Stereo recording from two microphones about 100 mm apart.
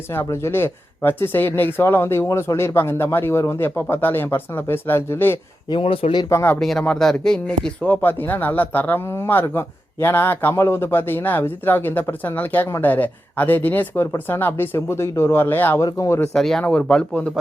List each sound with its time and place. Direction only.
0.1 s speech: 25° left (ahead or behind)
5.8 s speech: 65° left (ahead or behind)
6.2 s speech: 30° left (ahead or behind)
6.6 s speech: 5° left (ahead or behind); by 15.8 s 20° left (ahead or behind)
15.8 s speech: 35° left (ahead or behind)
16.3 s speech: 5° left (ahead or behind)